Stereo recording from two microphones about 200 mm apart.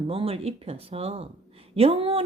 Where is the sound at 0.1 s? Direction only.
30° right (ahead or behind).